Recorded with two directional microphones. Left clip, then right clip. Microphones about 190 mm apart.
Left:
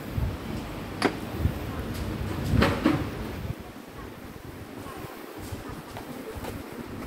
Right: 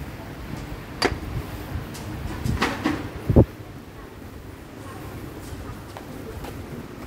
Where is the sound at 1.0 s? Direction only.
40° right (ahead or behind).